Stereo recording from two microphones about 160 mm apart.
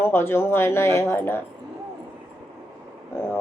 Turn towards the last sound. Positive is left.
turn(degrees=15)  # may be behind; listen again after turning